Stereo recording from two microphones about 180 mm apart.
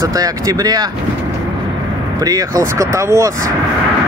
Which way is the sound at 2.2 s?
20° right (ahead or behind).